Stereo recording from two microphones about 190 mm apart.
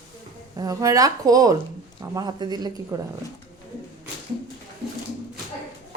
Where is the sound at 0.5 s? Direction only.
20° right (ahead or behind).